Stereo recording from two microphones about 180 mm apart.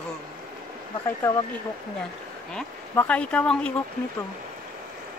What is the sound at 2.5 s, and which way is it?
Speech, 5° left (ahead or behind).